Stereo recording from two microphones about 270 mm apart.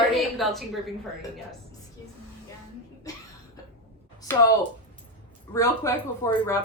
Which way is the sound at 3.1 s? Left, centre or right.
Centre.